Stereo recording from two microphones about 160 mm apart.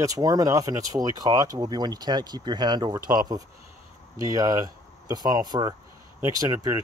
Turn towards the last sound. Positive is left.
turn(degrees=-25)  # may be behind; listen again after turning